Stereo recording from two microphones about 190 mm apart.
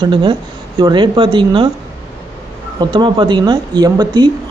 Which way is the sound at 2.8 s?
25° right (ahead or behind).